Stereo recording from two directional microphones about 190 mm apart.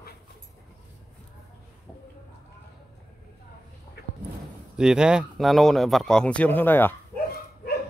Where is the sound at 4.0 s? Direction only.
60° left (ahead or behind).